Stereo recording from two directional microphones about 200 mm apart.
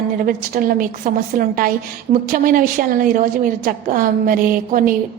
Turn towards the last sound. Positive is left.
turn(degrees=-45)  # may be behind; listen again after turning